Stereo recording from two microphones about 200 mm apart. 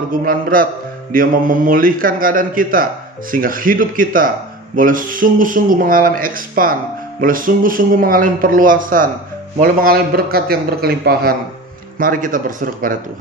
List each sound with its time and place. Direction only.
0.1 s speech: 45° right (ahead or behind)